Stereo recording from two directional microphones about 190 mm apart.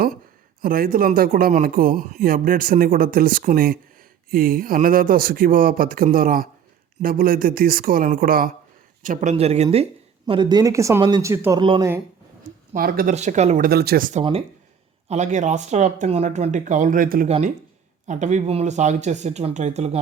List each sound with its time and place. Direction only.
0.6 s speech: 50° right (ahead or behind)
9.0 s speech: 35° right (ahead or behind); by 11.6 s 15° right (ahead or behind)
11.6 s speech: 25° right (ahead or behind)
12.7 s speech: 45° right (ahead or behind)
13.1 s speech: 35° right (ahead or behind)
13.7 s speech: 55° right (ahead or behind)
14.1 s speech: 30° right (ahead or behind); by 17.2 s 45° right (ahead or behind)
17.2 s speech: 35° right (ahead or behind)